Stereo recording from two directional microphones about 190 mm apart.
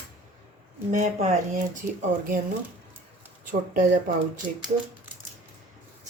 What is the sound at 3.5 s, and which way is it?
Speech, 45° right (ahead or behind).